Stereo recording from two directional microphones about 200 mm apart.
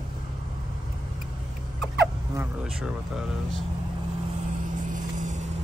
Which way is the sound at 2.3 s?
5° right (ahead or behind).